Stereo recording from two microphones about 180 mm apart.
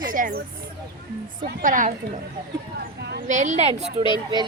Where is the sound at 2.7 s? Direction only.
70° right (ahead or behind).